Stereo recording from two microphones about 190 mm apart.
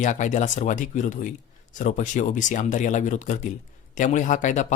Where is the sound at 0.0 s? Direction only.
40° left (ahead or behind).